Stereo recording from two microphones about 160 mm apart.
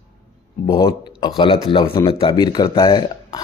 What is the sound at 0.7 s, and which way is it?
Speech, 25° left (ahead or behind).